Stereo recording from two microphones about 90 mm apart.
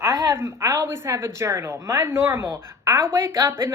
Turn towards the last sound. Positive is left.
turn(degrees=-30)  # may be behind; listen again after turning